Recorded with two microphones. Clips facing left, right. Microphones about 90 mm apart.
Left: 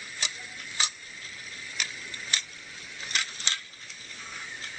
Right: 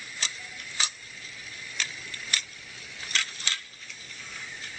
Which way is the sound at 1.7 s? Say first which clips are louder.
Right 1 dB; 15° left (ahead or behind).